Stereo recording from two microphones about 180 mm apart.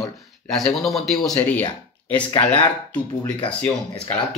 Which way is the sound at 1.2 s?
10° left (ahead or behind).